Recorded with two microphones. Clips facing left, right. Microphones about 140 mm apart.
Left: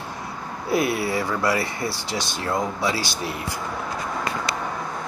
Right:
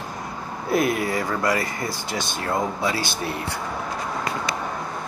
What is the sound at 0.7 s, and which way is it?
Speech, 50° right (ahead or behind).